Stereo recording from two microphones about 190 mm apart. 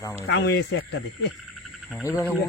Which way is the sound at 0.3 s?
70° left (ahead or behind).